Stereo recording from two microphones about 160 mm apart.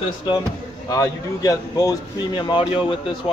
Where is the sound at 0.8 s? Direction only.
20° left (ahead or behind).